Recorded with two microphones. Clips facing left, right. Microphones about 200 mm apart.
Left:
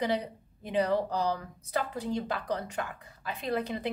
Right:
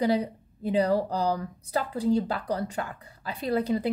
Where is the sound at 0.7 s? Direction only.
35° right (ahead or behind).